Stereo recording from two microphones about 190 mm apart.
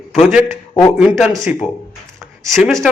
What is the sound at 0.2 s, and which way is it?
Speech, 5° right (ahead or behind).